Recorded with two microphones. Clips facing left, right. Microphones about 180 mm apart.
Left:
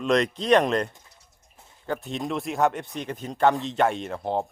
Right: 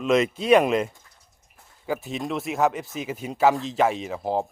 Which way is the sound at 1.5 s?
20° left (ahead or behind).